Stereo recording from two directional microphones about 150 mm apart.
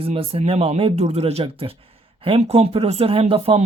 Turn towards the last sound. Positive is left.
turn(degrees=-40)  # may be behind; listen again after turning